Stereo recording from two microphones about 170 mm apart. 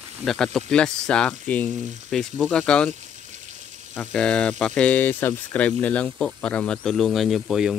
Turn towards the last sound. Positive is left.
turn(degrees=-5)  # may be behind; listen again after turning